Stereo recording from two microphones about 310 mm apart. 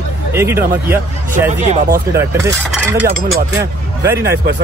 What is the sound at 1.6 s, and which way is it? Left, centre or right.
Speech, right.